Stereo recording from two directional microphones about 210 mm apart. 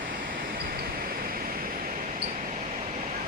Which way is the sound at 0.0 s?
40° right (ahead or behind).